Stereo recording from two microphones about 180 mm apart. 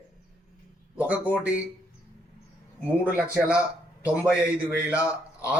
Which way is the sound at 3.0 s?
10° right (ahead or behind).